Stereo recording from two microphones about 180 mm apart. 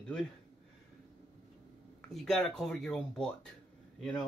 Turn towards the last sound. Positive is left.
turn(degrees=5)  # may be behind; listen again after turning